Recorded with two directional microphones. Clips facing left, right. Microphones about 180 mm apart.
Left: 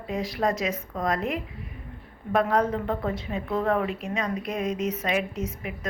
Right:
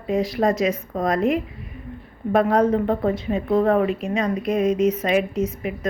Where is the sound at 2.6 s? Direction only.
35° right (ahead or behind).